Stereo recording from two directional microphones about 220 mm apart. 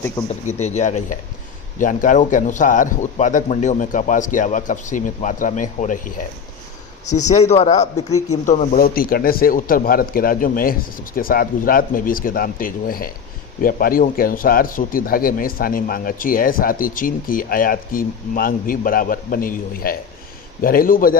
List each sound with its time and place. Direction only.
0.3 s speech: 30° left (ahead or behind)